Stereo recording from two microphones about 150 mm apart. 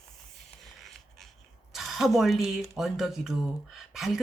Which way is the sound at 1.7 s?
Centre (ahead or behind).